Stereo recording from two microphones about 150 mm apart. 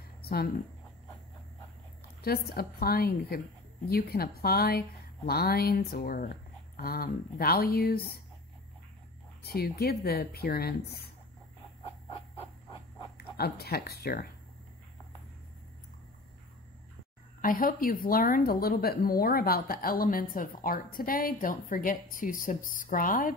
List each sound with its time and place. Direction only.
0.2 s a sound: 90° left
2.2 s a woman's voice: 90° left; by 6.3 s 75° left (ahead or behind)
6.8 s a woman's voice: 85° left
9.4 s a woman's voice: 90° left
13.4 s a woman's voice: 90° left
17.4 s speech: 70° left (ahead or behind)